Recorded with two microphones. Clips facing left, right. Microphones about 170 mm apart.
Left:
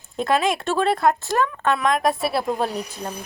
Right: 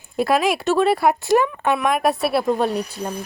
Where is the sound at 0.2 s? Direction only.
5° right (ahead or behind).